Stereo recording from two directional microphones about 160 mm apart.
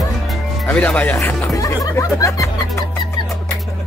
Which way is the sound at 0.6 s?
10° left (ahead or behind).